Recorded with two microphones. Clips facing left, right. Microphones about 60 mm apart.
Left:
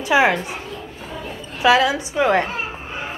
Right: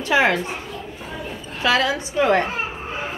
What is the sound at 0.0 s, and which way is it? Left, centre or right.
Speech, centre.